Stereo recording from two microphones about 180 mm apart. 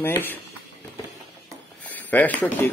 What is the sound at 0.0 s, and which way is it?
Speech, 10° left (ahead or behind).